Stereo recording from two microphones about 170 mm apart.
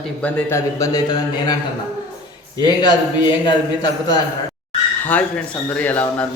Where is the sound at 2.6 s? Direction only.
25° left (ahead or behind).